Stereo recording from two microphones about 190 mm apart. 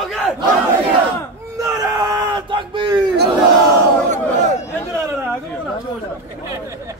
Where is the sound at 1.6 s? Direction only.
20° right (ahead or behind).